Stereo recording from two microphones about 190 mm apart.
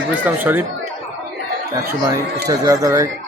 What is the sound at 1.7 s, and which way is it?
A man's voice, 15° right (ahead or behind).